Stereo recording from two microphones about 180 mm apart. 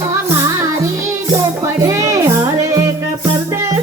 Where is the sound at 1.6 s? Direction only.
15° right (ahead or behind).